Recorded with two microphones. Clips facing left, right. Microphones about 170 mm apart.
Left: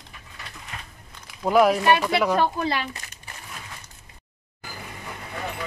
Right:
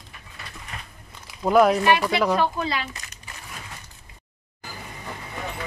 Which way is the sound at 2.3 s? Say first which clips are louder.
Even; 50° left (ahead or behind).